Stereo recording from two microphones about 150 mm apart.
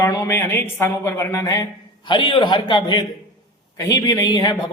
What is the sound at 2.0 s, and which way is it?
A man's voice, 35° left (ahead or behind).